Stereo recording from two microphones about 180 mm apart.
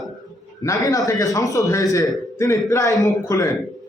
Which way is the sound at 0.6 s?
20° left (ahead or behind).